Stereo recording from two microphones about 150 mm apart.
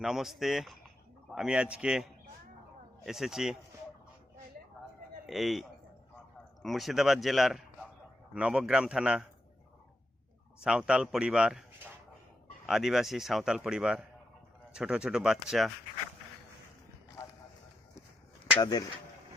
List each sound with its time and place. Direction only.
0.0 s speech: 5° right (ahead or behind)
5.2 s a man's voice: centre (ahead or behind)
10.6 s speech: 5° right (ahead or behind)
12.6 s speech: centre (ahead or behind)
17.2 s a sound: 25° left (ahead or behind)
18.6 s speech: 25° left (ahead or behind)